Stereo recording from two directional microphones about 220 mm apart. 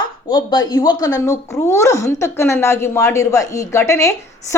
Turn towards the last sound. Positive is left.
turn(degrees=10)  # may be behind; listen again after turning